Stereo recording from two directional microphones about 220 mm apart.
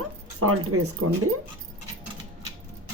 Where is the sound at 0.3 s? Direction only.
80° right.